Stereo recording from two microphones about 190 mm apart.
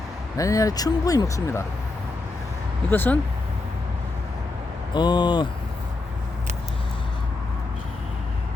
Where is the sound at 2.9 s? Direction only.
10° left (ahead or behind).